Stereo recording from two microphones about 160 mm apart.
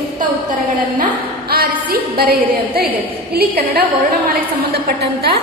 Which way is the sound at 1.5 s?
70° right (ahead or behind).